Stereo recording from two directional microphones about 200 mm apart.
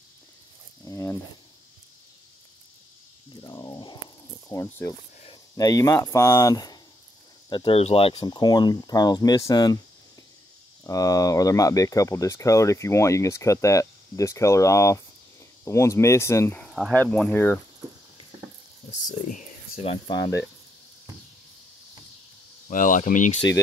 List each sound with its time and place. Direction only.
0.8 s a sound: 15° left (ahead or behind)
3.3 s a sound: 20° left (ahead or behind)
4.5 s speech: 15° left (ahead or behind)
10.8 s speech: 15° left (ahead or behind)
19.2 s speech: 35° left (ahead or behind); by 20.4 s 20° left (ahead or behind)
22.7 s speech: 40° left (ahead or behind)